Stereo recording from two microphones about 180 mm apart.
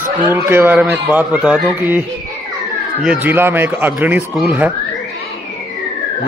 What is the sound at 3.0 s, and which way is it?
Speech, 10° right (ahead or behind).